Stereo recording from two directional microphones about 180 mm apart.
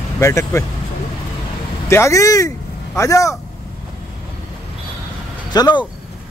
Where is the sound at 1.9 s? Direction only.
15° left (ahead or behind).